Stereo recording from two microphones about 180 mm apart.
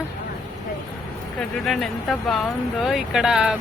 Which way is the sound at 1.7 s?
Centre (ahead or behind).